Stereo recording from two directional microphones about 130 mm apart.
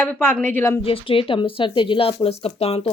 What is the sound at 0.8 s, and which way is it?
Speech, 45° left (ahead or behind).